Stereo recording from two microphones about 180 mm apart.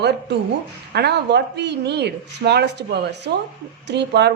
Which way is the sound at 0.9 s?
65° right (ahead or behind).